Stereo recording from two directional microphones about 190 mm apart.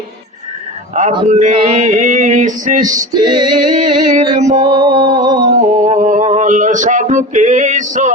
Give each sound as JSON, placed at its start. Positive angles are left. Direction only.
{"t": 1.2, "sound": "music", "side_deg": -40}
{"t": 1.5, "sound": "music", "side_deg": -30}
{"t": 3.2, "sound": "music", "side_deg": -25}
{"t": 3.8, "sound": "music", "side_deg": -40}
{"t": 4.7, "sound": "music", "side_deg": -20}
{"t": 5.5, "sound": "a sound", "side_deg": -40}